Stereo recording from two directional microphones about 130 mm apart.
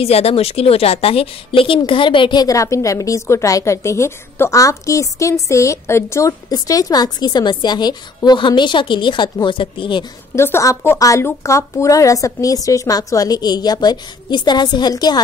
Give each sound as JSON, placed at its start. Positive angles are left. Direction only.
{"t": 0.0, "sound": "a woman's voice", "side_deg": 50}
{"t": 10.3, "sound": "a woman's voice", "side_deg": 20}